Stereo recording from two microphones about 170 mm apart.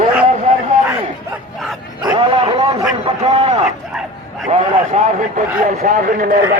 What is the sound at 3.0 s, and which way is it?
A man's voice, 40° right (ahead or behind).